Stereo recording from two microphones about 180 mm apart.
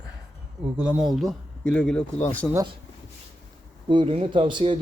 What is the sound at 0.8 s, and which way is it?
Speech, 5° right (ahead or behind).